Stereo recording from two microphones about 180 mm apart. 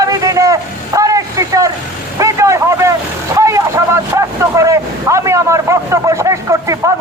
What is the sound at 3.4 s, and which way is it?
Vehicle, 15° right (ahead or behind).